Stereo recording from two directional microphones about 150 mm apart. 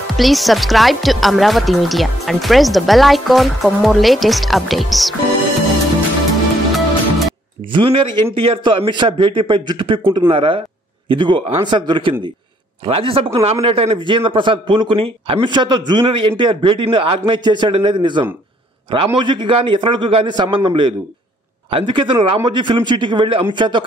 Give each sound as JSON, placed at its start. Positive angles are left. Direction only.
{"t": 0.2, "sound": "a woman's voice", "side_deg": 0}
{"t": 6.7, "sound": "music", "side_deg": 0}
{"t": 7.7, "sound": "a man's voice", "side_deg": -35}